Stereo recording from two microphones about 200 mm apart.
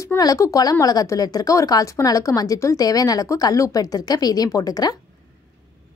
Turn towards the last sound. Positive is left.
turn(degrees=20)  # may be behind; listen again after turning